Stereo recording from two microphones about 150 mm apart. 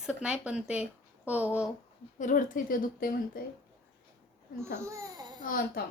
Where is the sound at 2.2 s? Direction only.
65° left (ahead or behind).